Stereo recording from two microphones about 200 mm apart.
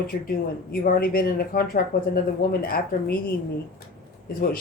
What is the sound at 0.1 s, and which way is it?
Speech, 45° left (ahead or behind).